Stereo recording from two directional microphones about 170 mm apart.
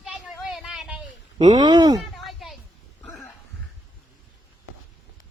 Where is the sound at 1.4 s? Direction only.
25° right (ahead or behind).